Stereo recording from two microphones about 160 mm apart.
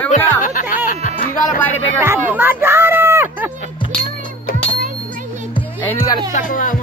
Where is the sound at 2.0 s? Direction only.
15° right (ahead or behind).